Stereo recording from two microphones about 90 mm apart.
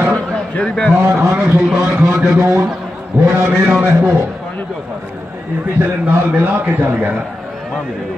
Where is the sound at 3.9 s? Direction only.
25° right (ahead or behind).